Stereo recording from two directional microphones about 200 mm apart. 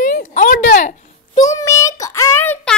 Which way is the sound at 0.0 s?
40° left (ahead or behind).